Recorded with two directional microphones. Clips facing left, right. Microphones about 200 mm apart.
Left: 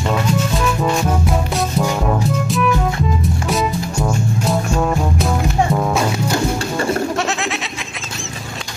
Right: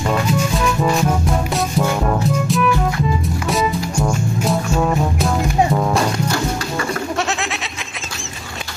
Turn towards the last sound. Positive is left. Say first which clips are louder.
# left 2 dB
turn(degrees=0)  # may be behind; listen again after turning